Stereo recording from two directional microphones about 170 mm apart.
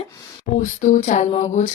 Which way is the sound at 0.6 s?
45° left (ahead or behind).